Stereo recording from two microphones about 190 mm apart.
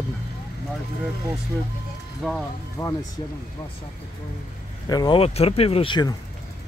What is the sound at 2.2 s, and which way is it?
Speech, centre (ahead or behind).